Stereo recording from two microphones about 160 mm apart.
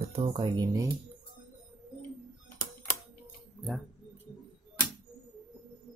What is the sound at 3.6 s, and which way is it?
Speech, centre (ahead or behind).